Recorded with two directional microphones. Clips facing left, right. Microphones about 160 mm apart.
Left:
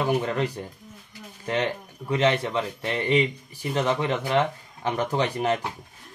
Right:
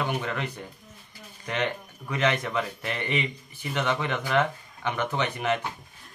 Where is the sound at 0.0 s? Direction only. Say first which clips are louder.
Left 5 dB; 35° left (ahead or behind).